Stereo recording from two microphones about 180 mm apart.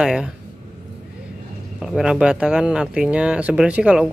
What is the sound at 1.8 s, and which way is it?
Speech, centre (ahead or behind).